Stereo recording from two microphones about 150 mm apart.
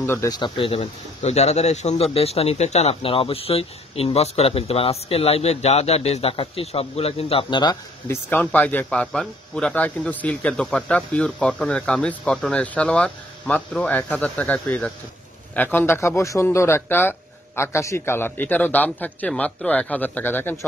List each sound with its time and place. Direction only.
0.0 s speech: 15° left (ahead or behind)
0.4 s speech: 35° left (ahead or behind)
8.1 s speech: 10° left (ahead or behind)